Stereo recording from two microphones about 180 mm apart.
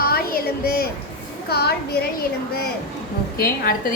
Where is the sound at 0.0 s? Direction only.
55° left (ahead or behind).